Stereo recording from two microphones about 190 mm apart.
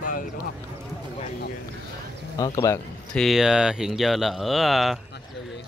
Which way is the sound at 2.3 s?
20° left (ahead or behind).